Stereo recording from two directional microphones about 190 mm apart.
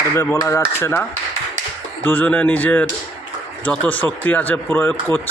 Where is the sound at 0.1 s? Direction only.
15° left (ahead or behind).